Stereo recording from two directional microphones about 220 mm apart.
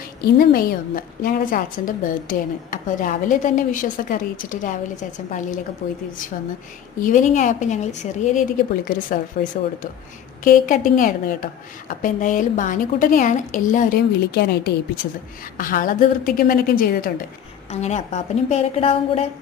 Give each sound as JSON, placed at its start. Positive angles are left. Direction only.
{"t": 0.2, "sound": "a woman's voice", "side_deg": 45}
{"t": 7.0, "sound": "a woman's voice", "side_deg": 35}
{"t": 17.7, "sound": "a woman's voice", "side_deg": 30}